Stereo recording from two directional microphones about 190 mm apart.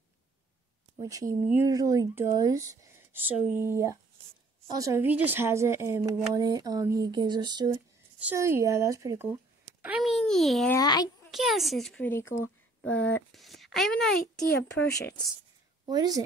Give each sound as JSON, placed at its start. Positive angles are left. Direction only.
{"t": 1.0, "sound": "speech", "side_deg": -15}
{"t": 8.2, "sound": "speech", "side_deg": -10}
{"t": 9.8, "sound": "a sound", "side_deg": -5}
{"t": 10.7, "sound": "a child's voice", "side_deg": 20}
{"t": 11.2, "sound": "speech", "side_deg": 0}
{"t": 15.9, "sound": "speech", "side_deg": -20}